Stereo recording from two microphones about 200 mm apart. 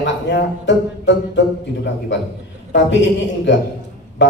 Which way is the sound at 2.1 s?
65° left (ahead or behind).